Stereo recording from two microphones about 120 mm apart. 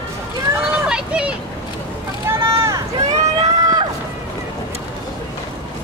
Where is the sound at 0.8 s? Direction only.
10° right (ahead or behind).